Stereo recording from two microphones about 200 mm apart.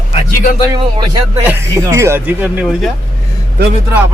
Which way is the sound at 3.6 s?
55° right (ahead or behind).